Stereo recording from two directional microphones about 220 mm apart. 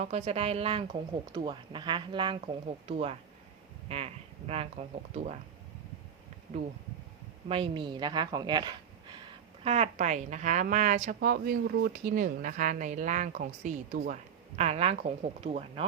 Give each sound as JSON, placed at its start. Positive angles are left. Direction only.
{"t": 0.0, "sound": "speech", "side_deg": -30}
{"t": 7.4, "sound": "a woman's voice", "side_deg": -25}